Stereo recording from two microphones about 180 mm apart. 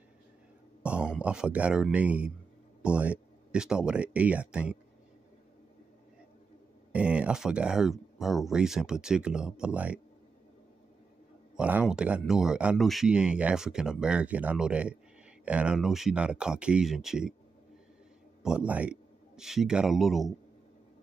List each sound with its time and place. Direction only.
0.8 s a sound: 5° right (ahead or behind)
1.2 s speech: 5° right (ahead or behind)
6.9 s speech: 5° right (ahead or behind)
11.5 s speech: 5° right (ahead or behind)
18.4 s a man's voice: 5° right (ahead or behind)